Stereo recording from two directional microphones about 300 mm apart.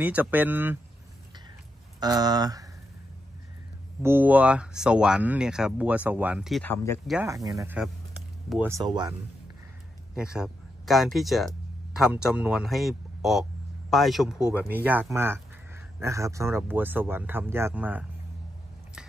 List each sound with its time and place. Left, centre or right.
0.0 s speech: centre
2.0 s speech: centre
4.0 s speech: centre
7.2 s speech: centre
10.1 s a man's voice: centre